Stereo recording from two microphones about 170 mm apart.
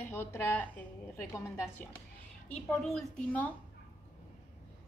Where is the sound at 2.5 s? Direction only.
5° left (ahead or behind).